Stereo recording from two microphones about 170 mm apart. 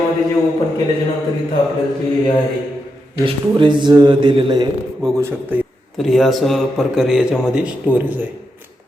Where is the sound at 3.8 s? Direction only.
25° right (ahead or behind).